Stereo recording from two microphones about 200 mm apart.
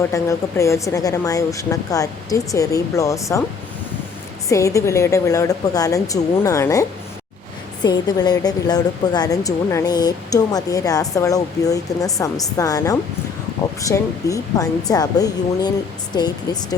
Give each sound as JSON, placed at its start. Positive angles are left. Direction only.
{"t": 0.1, "sound": "speech", "side_deg": 15}
{"t": 4.4, "sound": "speech", "side_deg": 15}
{"t": 7.9, "sound": "speech", "side_deg": 20}